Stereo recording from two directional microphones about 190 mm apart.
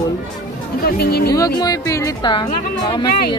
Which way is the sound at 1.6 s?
15° left (ahead or behind).